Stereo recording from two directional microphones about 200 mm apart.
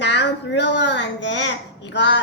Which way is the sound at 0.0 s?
60° left (ahead or behind).